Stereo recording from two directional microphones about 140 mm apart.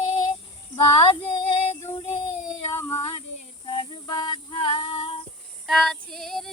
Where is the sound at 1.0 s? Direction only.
40° left (ahead or behind).